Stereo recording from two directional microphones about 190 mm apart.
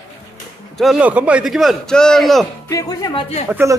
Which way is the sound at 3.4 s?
10° right (ahead or behind).